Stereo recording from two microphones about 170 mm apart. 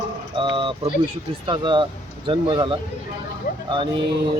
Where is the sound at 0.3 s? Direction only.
30° right (ahead or behind).